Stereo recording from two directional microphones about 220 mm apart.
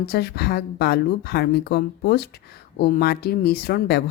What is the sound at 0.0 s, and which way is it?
Speech, 45° left (ahead or behind).